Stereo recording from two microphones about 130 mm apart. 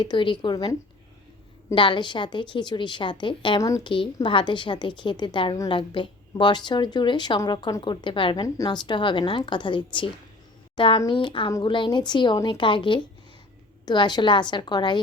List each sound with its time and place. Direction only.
0.0 s a woman's voice: 40° left (ahead or behind)
3.6 s a woman's voice: 25° left (ahead or behind)
3.8 s a woman's voice: 40° left (ahead or behind)